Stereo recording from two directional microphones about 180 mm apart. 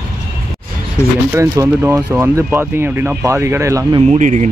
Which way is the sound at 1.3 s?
15° right (ahead or behind).